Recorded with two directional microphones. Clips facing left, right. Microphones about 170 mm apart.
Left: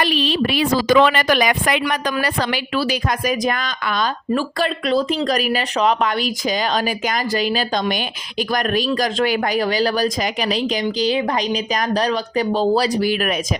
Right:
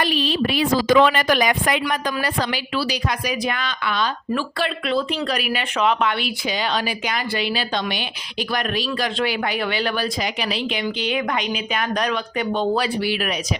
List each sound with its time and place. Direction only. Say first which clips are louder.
0.0 s a woman's voice: left 2 dB; 75° left (ahead or behind)
2.7 s speech: left 3 dB; 50° left (ahead or behind)